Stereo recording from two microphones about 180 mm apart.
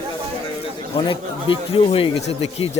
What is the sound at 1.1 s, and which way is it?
Speech, 30° left (ahead or behind).